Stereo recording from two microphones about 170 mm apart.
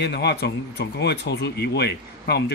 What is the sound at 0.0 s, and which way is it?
A man's voice, 80° left.